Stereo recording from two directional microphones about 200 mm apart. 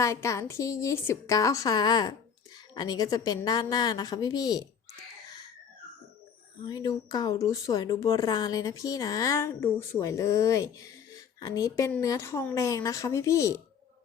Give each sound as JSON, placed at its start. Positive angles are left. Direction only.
{"t": 0.0, "sound": "a woman's voice", "side_deg": 15}
{"t": 6.7, "sound": "speech", "side_deg": 20}